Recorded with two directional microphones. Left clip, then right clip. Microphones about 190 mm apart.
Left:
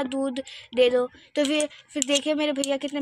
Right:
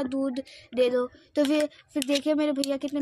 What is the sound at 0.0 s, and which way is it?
Speech, 5° left (ahead or behind).